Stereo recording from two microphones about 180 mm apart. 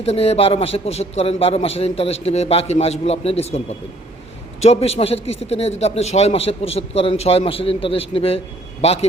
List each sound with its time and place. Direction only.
0.0 s a man's voice: 35° left (ahead or behind)
4.6 s a man's voice: 35° left (ahead or behind)